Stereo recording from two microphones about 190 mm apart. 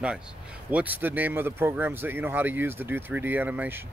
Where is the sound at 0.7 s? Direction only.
10° right (ahead or behind).